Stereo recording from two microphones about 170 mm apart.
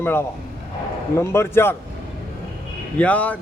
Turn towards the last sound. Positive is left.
turn(degrees=10)  # may be behind; listen again after turning